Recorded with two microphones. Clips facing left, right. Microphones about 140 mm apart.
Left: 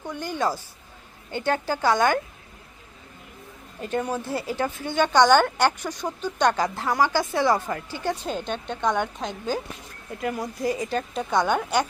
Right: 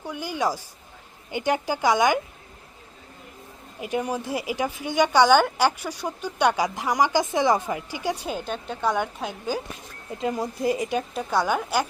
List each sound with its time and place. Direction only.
0.0 s a woman's voice: 10° right (ahead or behind)
3.8 s a woman's voice: 10° right (ahead or behind)
10.2 s a woman's voice: 25° right (ahead or behind)
10.9 s a woman's voice: 5° right (ahead or behind)